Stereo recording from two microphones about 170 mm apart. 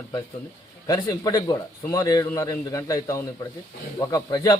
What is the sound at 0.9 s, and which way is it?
A man's voice, 20° left (ahead or behind).